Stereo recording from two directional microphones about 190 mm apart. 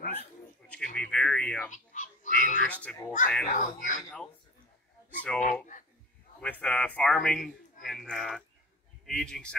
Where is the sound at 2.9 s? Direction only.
5° left (ahead or behind).